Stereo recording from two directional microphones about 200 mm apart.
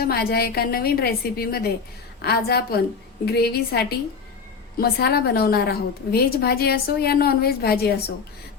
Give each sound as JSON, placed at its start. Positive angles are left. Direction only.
{"t": 0.0, "sound": "a woman's voice", "side_deg": 50}